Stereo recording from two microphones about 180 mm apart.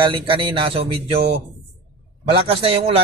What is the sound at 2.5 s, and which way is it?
Speech, 30° right (ahead or behind).